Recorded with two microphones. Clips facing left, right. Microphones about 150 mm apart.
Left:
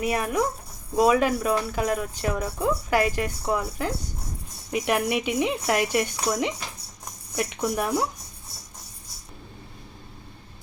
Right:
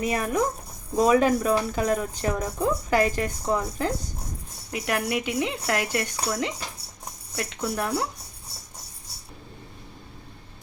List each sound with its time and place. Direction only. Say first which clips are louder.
0.0 s speech: even; 10° left (ahead or behind)
4.7 s speech: left 3 dB; 20° left (ahead or behind)